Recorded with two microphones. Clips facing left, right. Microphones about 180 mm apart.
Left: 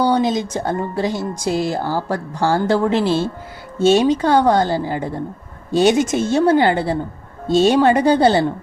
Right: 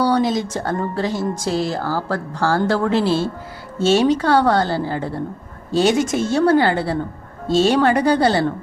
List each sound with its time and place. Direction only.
0.0 s a woman's voice: 20° left (ahead or behind)